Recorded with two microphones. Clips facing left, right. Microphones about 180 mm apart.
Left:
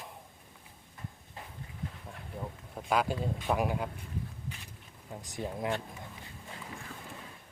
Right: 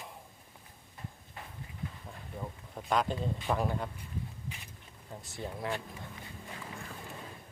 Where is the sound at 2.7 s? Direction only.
5° left (ahead or behind).